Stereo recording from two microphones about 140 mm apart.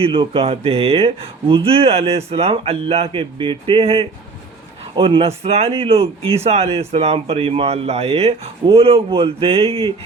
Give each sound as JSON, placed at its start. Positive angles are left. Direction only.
{"t": 0.0, "sound": "a man's voice", "side_deg": -40}